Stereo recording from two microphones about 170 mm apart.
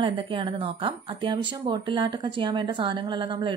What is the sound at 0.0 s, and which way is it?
Speech, 30° right (ahead or behind).